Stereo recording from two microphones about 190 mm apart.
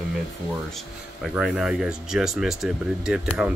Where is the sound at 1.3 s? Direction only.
Centre (ahead or behind).